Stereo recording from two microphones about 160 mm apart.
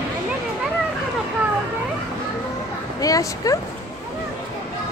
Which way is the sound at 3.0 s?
20° left (ahead or behind).